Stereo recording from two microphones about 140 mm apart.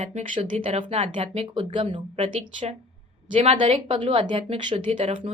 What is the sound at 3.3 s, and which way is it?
A woman's voice, 40° right (ahead or behind).